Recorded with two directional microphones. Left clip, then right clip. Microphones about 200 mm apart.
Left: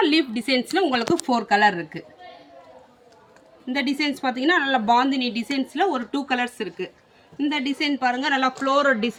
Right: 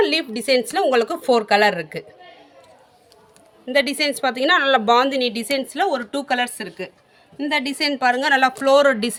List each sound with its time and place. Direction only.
0.0 s speech: 50° right (ahead or behind); by 2.0 s 65° right (ahead or behind)
3.7 s speech: 65° right (ahead or behind)